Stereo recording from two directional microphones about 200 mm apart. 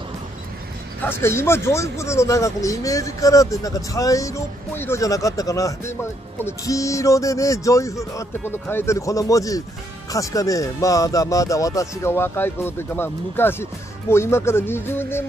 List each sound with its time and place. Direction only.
1.0 s speech: 10° left (ahead or behind)